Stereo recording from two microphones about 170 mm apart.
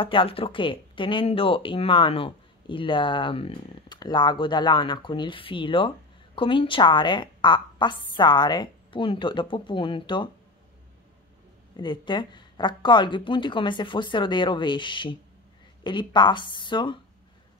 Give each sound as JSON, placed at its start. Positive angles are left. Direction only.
{"t": 0.0, "sound": "speech", "side_deg": 30}
{"t": 11.7, "sound": "speech", "side_deg": 30}